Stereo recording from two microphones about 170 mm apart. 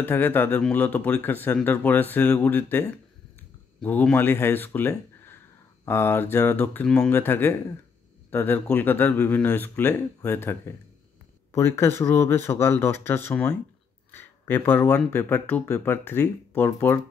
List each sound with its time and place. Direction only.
0.0 s speech: 10° left (ahead or behind)
13.3 s speech: 5° left (ahead or behind)